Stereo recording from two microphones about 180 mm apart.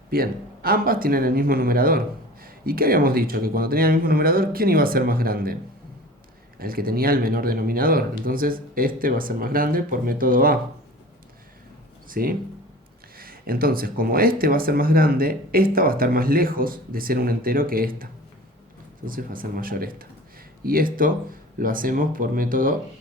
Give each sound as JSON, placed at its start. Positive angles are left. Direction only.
{"t": 0.1, "sound": "speech", "side_deg": -55}
{"t": 6.6, "sound": "speech", "side_deg": -55}
{"t": 12.0, "sound": "speech", "side_deg": -50}